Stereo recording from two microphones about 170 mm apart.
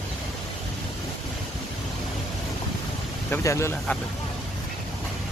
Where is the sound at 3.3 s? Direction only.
15° left (ahead or behind).